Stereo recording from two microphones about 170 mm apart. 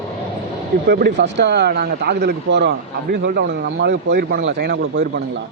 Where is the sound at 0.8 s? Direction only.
70° right (ahead or behind); by 5.2 s 90° right.